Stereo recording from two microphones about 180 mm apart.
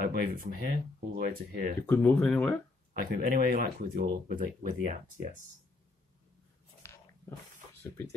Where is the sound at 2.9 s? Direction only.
55° right (ahead or behind).